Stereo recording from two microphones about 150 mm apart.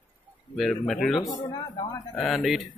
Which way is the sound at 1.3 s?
30° left (ahead or behind).